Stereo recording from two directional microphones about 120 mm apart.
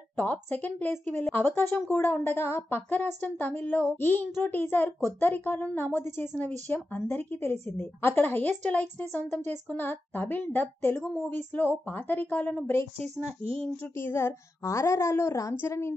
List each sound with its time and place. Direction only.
0.1 s a woman's voice: 15° left (ahead or behind)
11.0 s speech: centre (ahead or behind)
11.2 s a woman's voice: 15° left (ahead or behind)
13.0 s speech: 50° right (ahead or behind)
13.9 s a woman's voice: 20° left (ahead or behind)